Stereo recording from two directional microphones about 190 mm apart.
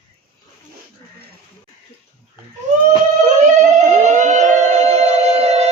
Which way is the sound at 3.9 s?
40° right (ahead or behind).